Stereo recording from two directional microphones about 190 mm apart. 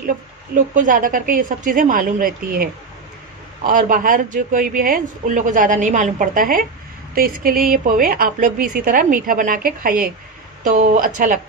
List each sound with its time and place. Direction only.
0.7 s speech: 45° right (ahead or behind)